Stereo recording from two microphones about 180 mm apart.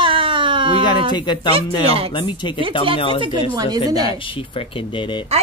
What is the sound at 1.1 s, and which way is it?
Speech, 25° left (ahead or behind).